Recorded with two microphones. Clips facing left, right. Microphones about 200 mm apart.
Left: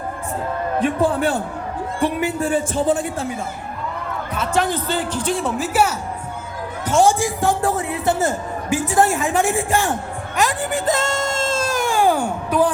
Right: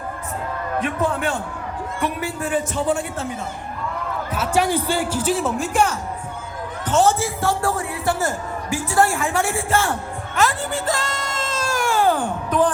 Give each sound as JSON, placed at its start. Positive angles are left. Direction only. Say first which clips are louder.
{"t": 0.8, "sound": "a man's voice", "louder": "left 4 dB", "side_deg": 30}
{"t": 4.4, "sound": "a man's voice", "louder": "right 1 dB", "side_deg": -10}